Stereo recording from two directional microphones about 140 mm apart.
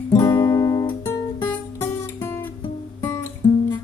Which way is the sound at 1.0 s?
15° left (ahead or behind).